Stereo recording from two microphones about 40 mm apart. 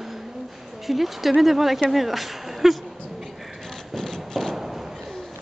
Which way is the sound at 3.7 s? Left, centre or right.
Centre.